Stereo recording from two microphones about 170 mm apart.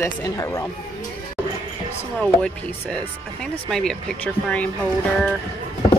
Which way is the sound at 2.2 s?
5° left (ahead or behind).